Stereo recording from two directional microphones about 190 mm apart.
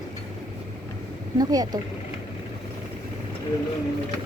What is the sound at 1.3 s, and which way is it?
Speech, 20° right (ahead or behind).